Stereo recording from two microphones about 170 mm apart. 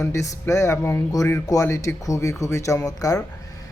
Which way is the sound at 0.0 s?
15° left (ahead or behind).